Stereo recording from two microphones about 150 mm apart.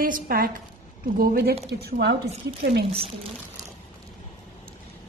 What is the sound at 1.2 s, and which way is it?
Speech, 90° right.